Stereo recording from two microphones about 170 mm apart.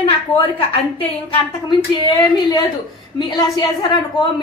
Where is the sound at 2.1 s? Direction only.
25° left (ahead or behind).